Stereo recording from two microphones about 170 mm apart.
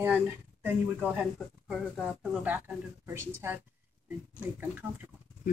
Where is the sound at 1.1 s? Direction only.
Centre (ahead or behind).